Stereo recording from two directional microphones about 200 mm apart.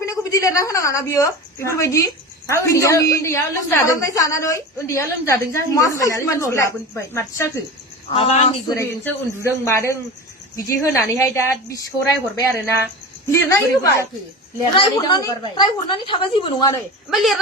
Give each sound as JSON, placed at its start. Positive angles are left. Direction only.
{"t": 0.0, "sound": "a woman's voice", "side_deg": 15}
{"t": 8.1, "sound": "a woman's voice", "side_deg": 30}
{"t": 8.7, "sound": "a woman's voice", "side_deg": 15}
{"t": 14.7, "sound": "a woman's voice", "side_deg": 20}
{"t": 17.1, "sound": "a woman's voice", "side_deg": 0}